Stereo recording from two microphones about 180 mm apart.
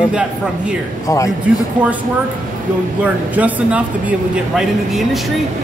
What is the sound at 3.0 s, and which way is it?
Speech, 5° right (ahead or behind).